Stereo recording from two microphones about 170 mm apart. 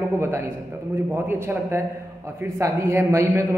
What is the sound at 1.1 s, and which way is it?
A man's voice, 15° right (ahead or behind).